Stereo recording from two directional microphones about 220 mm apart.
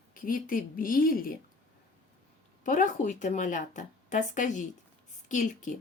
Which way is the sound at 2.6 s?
35° left (ahead or behind).